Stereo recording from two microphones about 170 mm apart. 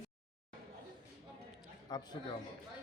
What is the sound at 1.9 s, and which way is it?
Speech, 25° left (ahead or behind).